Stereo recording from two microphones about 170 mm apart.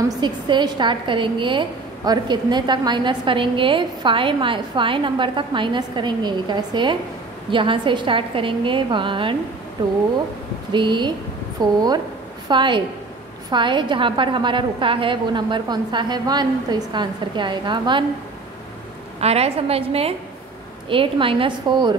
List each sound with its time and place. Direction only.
0.2 s a woman's voice: 25° right (ahead or behind)
10.7 s a woman's voice: 25° right (ahead or behind)
19.1 s a woman's voice: 35° right (ahead or behind)